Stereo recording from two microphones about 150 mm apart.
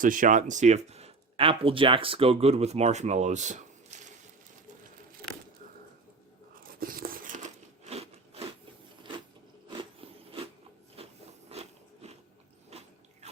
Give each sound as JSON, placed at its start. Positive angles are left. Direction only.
{"t": 0.0, "sound": "speech", "side_deg": -60}
{"t": 6.6, "sound": "biting", "side_deg": -70}
{"t": 9.6, "sound": "a sound", "side_deg": -35}
{"t": 11.5, "sound": "biting", "side_deg": -45}